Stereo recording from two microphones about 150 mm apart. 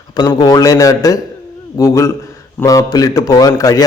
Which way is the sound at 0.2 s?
25° left (ahead or behind).